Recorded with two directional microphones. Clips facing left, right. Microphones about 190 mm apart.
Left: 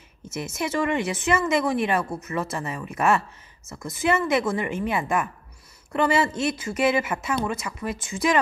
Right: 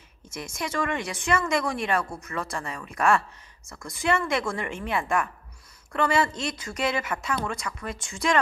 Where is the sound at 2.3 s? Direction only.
20° left (ahead or behind).